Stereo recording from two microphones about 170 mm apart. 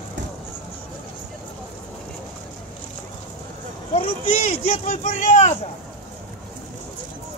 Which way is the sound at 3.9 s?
35° left (ahead or behind).